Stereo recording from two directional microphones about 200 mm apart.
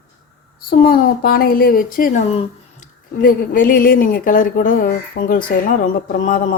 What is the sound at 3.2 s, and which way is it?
A woman's voice, 45° left (ahead or behind).